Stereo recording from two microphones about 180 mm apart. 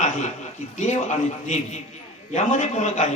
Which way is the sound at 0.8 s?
40° left (ahead or behind).